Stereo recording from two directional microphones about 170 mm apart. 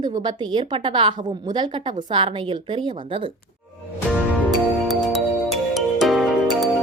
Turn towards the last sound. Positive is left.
turn(degrees=0)  # may be behind; listen again after turning